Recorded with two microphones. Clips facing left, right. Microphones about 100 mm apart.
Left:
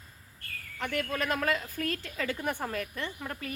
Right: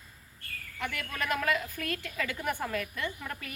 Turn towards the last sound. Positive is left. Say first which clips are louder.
# even
turn(degrees=35)  # may be behind; listen again after turning